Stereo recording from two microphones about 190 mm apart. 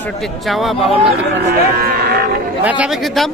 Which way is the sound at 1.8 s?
55° right (ahead or behind).